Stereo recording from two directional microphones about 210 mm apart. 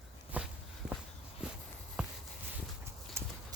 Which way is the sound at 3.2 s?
10° right (ahead or behind).